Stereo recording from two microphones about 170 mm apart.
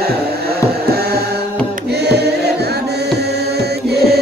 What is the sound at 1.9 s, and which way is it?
Music, 75° right (ahead or behind).